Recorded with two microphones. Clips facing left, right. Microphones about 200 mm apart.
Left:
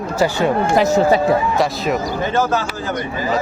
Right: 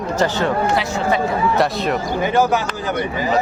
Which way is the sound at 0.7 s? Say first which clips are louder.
Left 6 dB; 40° left (ahead or behind).